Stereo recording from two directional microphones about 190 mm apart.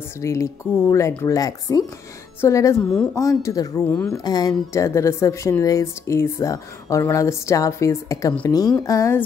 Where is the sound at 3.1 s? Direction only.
15° left (ahead or behind).